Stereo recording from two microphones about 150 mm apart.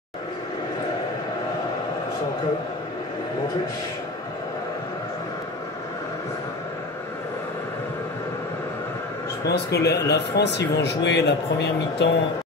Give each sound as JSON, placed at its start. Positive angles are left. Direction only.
{"t": 9.5, "sound": "speech", "side_deg": 90}